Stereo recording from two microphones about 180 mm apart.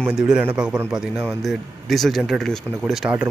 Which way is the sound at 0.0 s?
5° right (ahead or behind).